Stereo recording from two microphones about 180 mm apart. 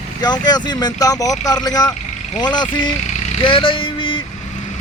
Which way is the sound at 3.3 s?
30° left (ahead or behind).